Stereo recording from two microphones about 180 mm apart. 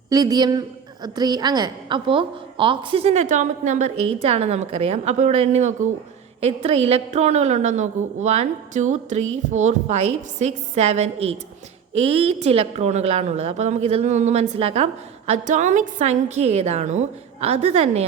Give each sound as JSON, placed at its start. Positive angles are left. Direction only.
{"t": 0.1, "sound": "a man's voice", "side_deg": -20}